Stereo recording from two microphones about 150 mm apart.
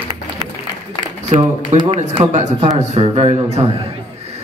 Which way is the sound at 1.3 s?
45° right (ahead or behind).